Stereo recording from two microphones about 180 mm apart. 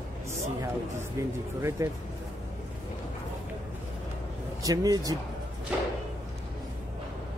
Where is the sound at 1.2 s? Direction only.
15° right (ahead or behind).